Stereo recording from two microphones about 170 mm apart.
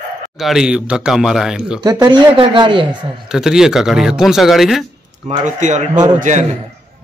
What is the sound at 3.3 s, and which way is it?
Speech, 5° right (ahead or behind).